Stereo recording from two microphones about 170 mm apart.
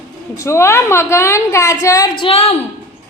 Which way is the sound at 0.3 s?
15° left (ahead or behind).